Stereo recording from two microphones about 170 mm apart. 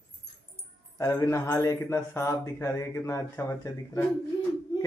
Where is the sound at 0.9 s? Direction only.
15° left (ahead or behind).